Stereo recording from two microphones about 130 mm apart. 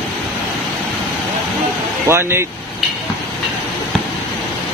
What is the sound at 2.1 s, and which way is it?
Speech, 20° right (ahead or behind).